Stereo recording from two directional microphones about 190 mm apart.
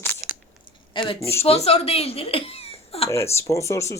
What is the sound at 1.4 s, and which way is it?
A woman's voice, 35° left (ahead or behind).